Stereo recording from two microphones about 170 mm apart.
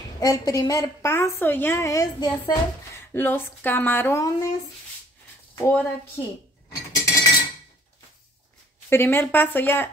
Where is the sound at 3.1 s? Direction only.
15° left (ahead or behind).